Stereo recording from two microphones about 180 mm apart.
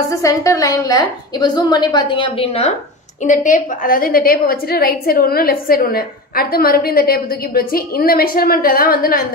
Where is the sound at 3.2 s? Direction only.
45° left (ahead or behind).